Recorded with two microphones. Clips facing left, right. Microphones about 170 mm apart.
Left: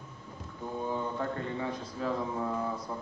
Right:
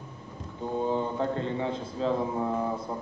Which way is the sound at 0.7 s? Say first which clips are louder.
Right 5 dB; 25° right (ahead or behind).